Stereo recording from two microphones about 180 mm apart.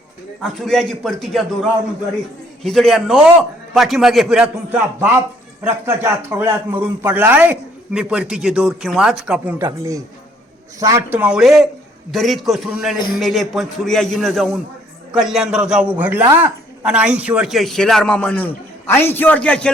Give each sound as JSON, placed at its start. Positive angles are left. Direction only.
{"t": 0.4, "sound": "a man's voice", "side_deg": 0}
{"t": 2.6, "sound": "a man's voice", "side_deg": 0}
{"t": 9.6, "sound": "a man's voice", "side_deg": -20}